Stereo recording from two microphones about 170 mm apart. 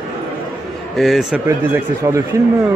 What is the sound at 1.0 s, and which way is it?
Speech, centre (ahead or behind).